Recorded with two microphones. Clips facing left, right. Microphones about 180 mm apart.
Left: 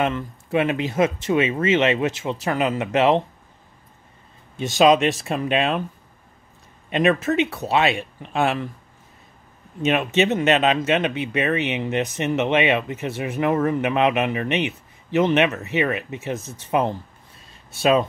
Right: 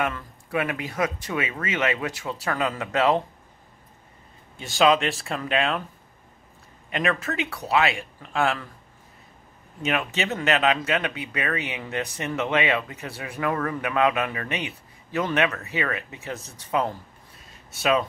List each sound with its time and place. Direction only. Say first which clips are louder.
0.0 s speech: left 5 dB; 25° left (ahead or behind)
4.6 s speech: left 4 dB; 20° left (ahead or behind)
6.9 s speech: left 7 dB; 20° left (ahead or behind)
9.8 s speech: left 7 dB; 20° left (ahead or behind)